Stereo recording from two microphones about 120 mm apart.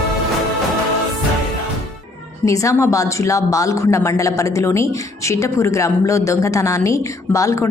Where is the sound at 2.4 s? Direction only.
25° left (ahead or behind).